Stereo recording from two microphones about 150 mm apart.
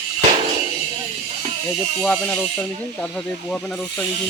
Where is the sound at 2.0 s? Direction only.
10° left (ahead or behind).